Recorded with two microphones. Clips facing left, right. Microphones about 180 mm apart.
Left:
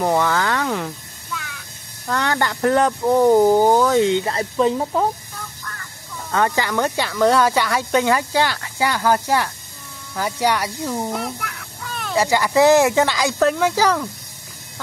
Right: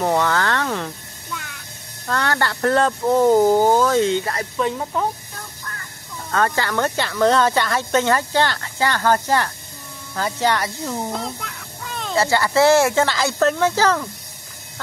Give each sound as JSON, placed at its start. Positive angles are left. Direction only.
{"t": 0.0, "sound": "speech", "side_deg": 10}
{"t": 2.0, "sound": "speech", "side_deg": 15}
{"t": 6.3, "sound": "speech", "side_deg": 15}
{"t": 11.4, "sound": "a sound", "side_deg": -20}
{"t": 12.2, "sound": "speech", "side_deg": 15}